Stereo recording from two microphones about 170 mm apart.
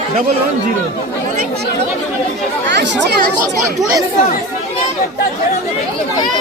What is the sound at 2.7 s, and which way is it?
Speech, 90° right.